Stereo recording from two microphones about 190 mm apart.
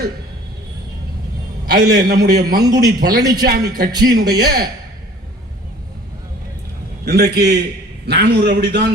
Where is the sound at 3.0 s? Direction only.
55° right (ahead or behind).